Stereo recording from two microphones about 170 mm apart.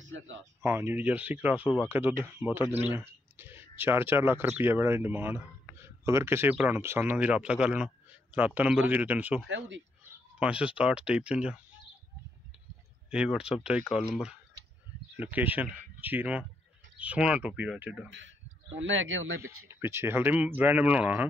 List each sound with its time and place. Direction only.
0.6 s speech: 15° right (ahead or behind)
9.5 s speech: 90° right
10.4 s speech: 5° right (ahead or behind)
13.1 s speech: 5° right (ahead or behind)
15.3 s speech: 10° right (ahead or behind)
18.8 s speech: 90° right
19.4 s speech: 15° right (ahead or behind)